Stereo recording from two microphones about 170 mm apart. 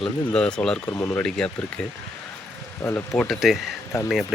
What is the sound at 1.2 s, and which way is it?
Speech, 5° left (ahead or behind).